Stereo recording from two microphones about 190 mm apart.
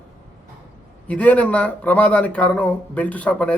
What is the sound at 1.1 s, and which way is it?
Speech, 5° left (ahead or behind).